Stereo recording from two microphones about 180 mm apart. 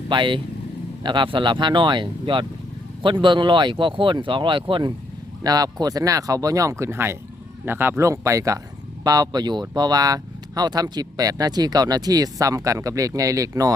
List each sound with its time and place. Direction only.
0.1 s speech: 25° right (ahead or behind)